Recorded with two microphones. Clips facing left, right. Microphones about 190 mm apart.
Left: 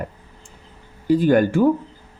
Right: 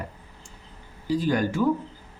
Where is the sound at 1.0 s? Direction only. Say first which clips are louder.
Left 8 dB; 55° left (ahead or behind).